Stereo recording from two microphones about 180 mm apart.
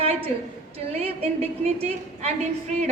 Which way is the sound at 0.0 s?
30° right (ahead or behind).